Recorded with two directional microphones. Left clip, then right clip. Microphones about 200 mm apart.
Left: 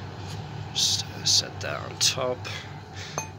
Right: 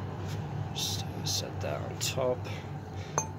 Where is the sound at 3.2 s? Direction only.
15° right (ahead or behind).